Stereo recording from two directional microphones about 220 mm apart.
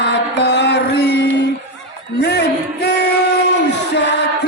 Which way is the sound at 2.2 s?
50° left (ahead or behind).